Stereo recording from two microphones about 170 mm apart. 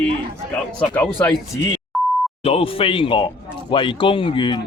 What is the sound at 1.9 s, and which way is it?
Beep, centre (ahead or behind).